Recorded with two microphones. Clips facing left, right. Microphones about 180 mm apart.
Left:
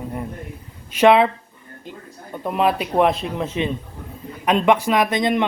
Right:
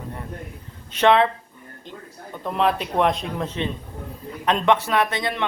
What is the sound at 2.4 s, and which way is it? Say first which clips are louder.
A man's voice: left 2 dB; 10° left (ahead or behind).